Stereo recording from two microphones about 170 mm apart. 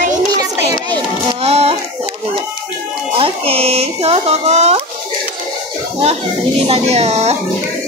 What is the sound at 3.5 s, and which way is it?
A woman's voice, 35° right (ahead or behind).